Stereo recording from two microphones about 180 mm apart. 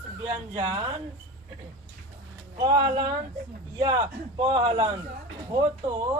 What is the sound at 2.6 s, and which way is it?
Speech, 25° right (ahead or behind).